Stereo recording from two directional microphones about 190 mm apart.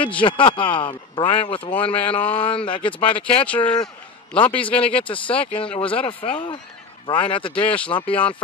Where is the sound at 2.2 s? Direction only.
5° left (ahead or behind).